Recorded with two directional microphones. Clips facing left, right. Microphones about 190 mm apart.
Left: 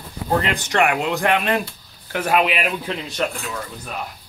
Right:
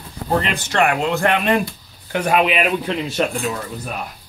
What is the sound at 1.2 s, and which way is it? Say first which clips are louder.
Speech: right 3 dB; centre (ahead or behind).